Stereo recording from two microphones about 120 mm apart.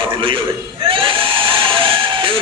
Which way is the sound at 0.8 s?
45° right (ahead or behind).